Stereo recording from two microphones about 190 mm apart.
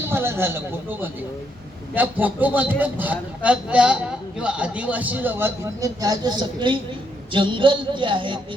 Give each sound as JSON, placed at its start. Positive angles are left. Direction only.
{"t": 0.0, "sound": "a man's voice", "side_deg": -10}